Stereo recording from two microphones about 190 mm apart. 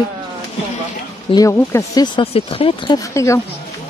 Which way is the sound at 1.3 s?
15° left (ahead or behind).